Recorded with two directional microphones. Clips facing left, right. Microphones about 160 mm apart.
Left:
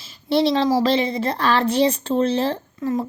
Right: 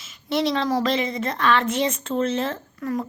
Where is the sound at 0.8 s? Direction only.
30° left (ahead or behind).